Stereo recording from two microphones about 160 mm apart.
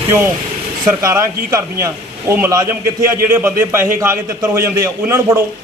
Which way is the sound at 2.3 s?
15° right (ahead or behind).